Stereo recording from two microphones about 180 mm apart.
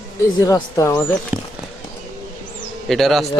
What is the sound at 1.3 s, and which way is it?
Speech, 5° right (ahead or behind).